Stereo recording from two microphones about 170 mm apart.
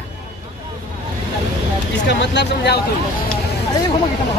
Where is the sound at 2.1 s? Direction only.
90° left.